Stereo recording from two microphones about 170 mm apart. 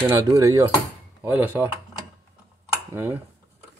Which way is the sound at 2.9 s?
10° right (ahead or behind).